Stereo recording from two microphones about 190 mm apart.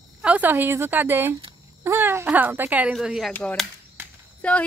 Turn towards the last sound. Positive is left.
turn(degrees=5)  # may be behind; listen again after turning